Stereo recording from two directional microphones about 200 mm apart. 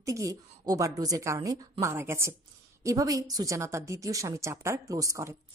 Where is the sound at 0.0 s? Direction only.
15° right (ahead or behind).